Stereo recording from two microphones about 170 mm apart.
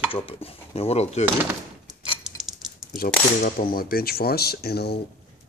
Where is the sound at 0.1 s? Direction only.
35° left (ahead or behind).